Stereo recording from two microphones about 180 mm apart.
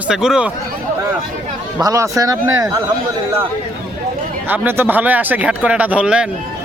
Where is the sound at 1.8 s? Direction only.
20° right (ahead or behind).